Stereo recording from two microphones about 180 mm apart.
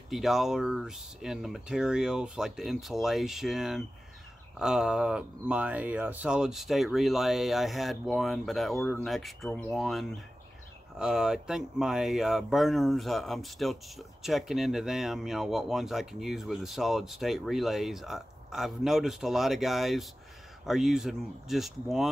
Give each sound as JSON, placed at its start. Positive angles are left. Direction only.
{"t": 0.1, "sound": "speech", "side_deg": 0}